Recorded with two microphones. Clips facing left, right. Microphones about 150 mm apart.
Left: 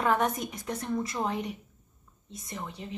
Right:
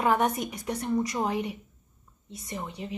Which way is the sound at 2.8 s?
10° right (ahead or behind).